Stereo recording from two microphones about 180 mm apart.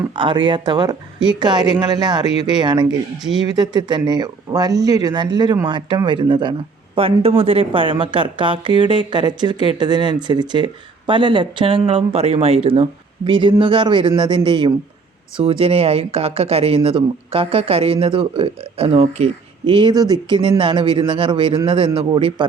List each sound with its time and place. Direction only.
0.2 s speech: 25° right (ahead or behind)